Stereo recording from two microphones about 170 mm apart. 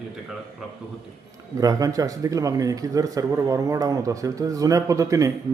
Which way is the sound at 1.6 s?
20° right (ahead or behind).